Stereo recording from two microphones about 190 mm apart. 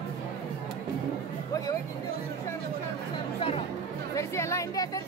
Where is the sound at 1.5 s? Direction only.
20° left (ahead or behind).